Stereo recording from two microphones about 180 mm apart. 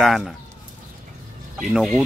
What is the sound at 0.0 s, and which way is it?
Chicken, centre (ahead or behind).